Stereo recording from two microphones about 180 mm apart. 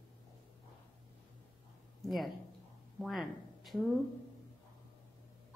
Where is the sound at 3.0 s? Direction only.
Centre (ahead or behind).